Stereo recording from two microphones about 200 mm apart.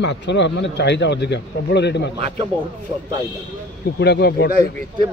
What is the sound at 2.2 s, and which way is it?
Speech, 35° right (ahead or behind).